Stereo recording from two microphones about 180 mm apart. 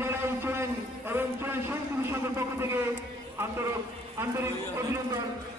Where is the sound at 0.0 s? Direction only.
15° right (ahead or behind).